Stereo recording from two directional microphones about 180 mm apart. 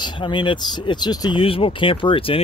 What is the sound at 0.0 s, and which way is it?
Speech, 25° left (ahead or behind).